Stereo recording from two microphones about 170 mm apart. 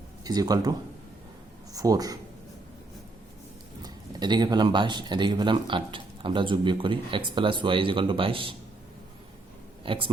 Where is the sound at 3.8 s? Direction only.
25° right (ahead or behind).